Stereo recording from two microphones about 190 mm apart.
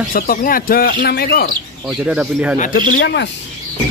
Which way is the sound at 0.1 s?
50° left (ahead or behind).